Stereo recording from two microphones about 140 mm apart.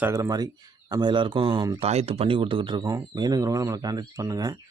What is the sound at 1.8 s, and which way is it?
Speech, 45° right (ahead or behind).